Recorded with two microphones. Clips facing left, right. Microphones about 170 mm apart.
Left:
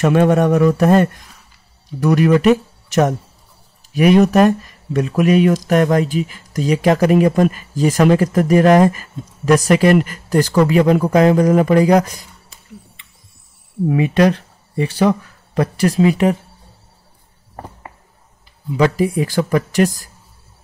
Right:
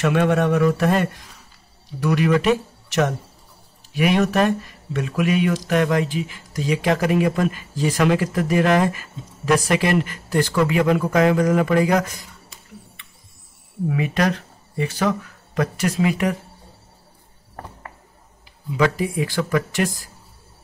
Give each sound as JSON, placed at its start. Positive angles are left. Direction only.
{"t": 0.0, "sound": "speech", "side_deg": 40}
{"t": 13.8, "sound": "speech", "side_deg": 30}
{"t": 18.8, "sound": "speech", "side_deg": 35}